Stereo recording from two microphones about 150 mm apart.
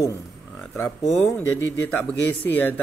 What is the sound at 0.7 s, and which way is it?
Speech, 10° left (ahead or behind).